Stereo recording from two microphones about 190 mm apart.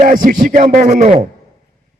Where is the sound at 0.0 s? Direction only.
45° right (ahead or behind).